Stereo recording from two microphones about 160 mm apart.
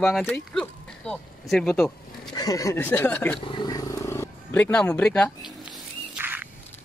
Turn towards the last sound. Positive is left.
turn(degrees=-10)  # may be behind; listen again after turning